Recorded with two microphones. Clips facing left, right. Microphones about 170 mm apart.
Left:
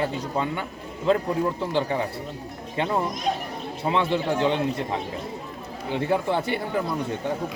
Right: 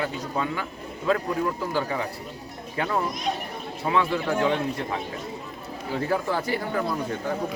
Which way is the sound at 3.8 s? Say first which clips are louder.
Left 1 dB; 25° left (ahead or behind).